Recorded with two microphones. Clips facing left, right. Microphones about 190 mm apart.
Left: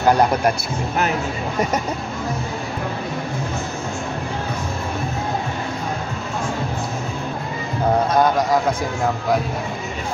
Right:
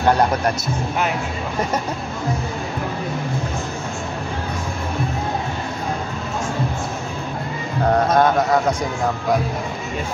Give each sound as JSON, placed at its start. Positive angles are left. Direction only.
{"t": 8.2, "sound": "a man's voice", "side_deg": 0}